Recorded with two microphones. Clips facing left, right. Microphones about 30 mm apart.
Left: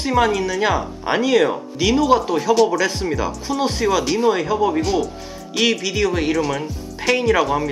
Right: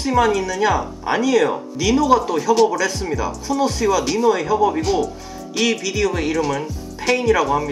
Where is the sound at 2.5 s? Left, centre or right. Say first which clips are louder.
Even; centre.